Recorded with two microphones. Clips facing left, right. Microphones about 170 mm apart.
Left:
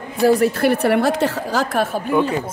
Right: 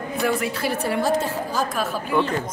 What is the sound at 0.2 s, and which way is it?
Speech, 40° left (ahead or behind).